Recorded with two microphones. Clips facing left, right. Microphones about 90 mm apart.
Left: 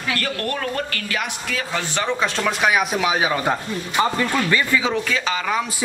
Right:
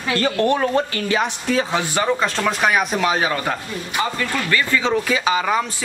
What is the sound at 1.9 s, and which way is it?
Speech, 5° right (ahead or behind).